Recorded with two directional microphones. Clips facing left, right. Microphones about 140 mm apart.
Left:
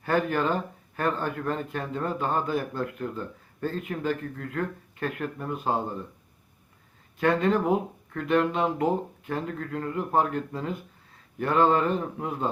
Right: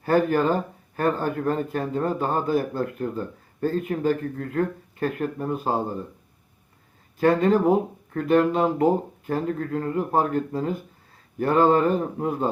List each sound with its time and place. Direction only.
0.0 s speech: 40° right (ahead or behind)
7.2 s speech: 40° right (ahead or behind)